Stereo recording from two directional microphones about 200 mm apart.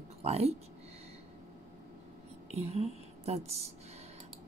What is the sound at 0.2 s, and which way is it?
Speech, 30° right (ahead or behind).